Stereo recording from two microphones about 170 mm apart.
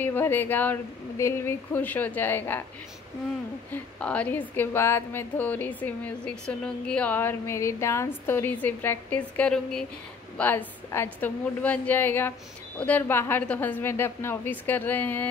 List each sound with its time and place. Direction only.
0.0 s a woman's voice: 10° left (ahead or behind)
3.7 s a woman's voice: 10° left (ahead or behind)